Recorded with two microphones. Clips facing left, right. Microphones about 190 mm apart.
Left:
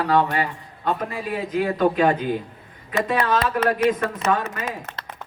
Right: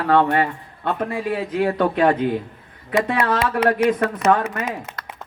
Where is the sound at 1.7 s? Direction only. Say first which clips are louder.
Even; 75° right (ahead or behind).